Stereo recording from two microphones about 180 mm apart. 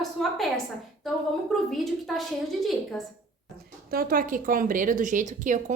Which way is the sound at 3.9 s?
55° right (ahead or behind).